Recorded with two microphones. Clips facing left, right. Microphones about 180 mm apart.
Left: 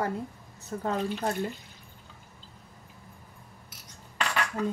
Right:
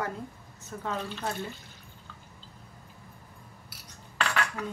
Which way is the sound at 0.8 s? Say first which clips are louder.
Left 5 dB; 40° left (ahead or behind).